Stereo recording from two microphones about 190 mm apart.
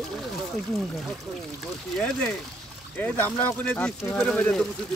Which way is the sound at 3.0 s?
10° left (ahead or behind).